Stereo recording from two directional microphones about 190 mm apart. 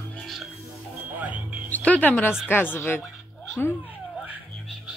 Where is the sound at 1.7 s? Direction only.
10° left (ahead or behind).